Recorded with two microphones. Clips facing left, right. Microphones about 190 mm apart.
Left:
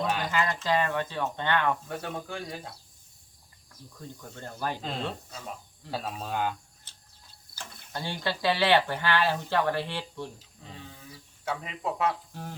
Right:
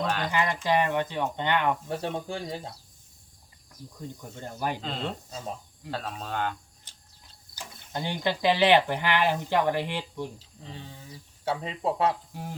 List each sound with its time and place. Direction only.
0.0 s a sound: 5° left (ahead or behind)
0.3 s speech: 15° right (ahead or behind)
1.9 s speech: 30° right (ahead or behind)
4.0 s speech: 15° right (ahead or behind)
5.9 s speech: 10° left (ahead or behind)
6.9 s a sound: 15° right (ahead or behind)
7.5 s speech: 15° right (ahead or behind)
10.3 s speech: 30° right (ahead or behind)
12.3 s speech: 15° right (ahead or behind)